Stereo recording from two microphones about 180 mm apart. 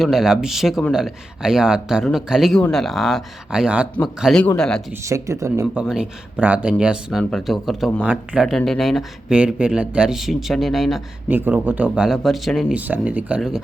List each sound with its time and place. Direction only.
0.0 s speech: centre (ahead or behind)
4.9 s speech: 15° right (ahead or behind)
5.8 s speech: 5° right (ahead or behind)